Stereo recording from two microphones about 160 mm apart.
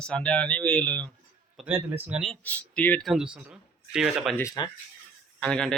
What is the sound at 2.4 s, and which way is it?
Speech, 10° left (ahead or behind).